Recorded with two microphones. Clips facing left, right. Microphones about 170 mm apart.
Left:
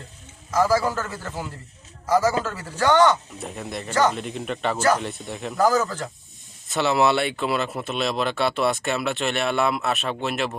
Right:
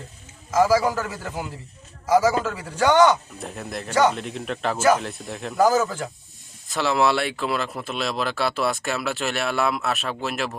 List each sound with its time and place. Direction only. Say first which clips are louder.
0.6 s a man's voice: right 2 dB; 10° right (ahead or behind)
3.3 s speech: even; centre (ahead or behind)